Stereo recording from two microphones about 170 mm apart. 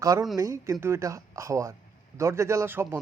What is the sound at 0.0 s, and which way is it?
A man's voice, 20° right (ahead or behind).